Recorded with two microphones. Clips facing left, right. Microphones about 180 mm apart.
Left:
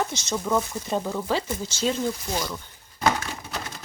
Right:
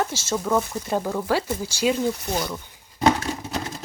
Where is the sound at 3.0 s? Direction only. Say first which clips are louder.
Right 4 dB; 35° right (ahead or behind).